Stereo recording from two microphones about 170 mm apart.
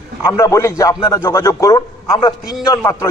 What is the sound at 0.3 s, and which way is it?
Speech, 15° left (ahead or behind).